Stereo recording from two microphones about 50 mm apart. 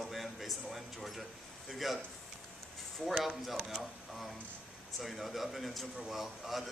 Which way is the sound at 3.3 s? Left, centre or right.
Centre.